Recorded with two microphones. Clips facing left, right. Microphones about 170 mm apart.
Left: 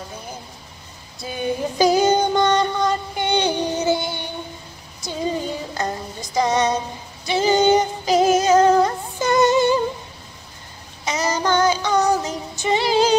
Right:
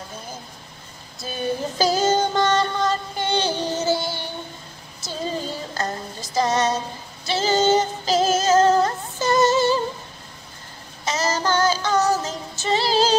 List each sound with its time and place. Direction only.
1.2 s child singing: 15° left (ahead or behind)
6.3 s music: 15° left (ahead or behind)
7.2 s female singing: 15° left (ahead or behind)
11.1 s child singing: 15° left (ahead or behind)